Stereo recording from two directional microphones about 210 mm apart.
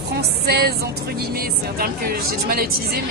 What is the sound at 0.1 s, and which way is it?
Music, 50° right (ahead or behind).